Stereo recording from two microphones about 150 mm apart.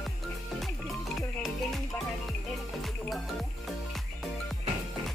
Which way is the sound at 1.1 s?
Centre (ahead or behind).